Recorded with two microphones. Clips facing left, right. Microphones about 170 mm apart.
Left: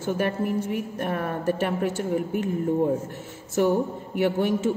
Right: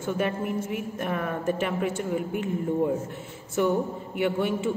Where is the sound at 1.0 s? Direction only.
40° left (ahead or behind).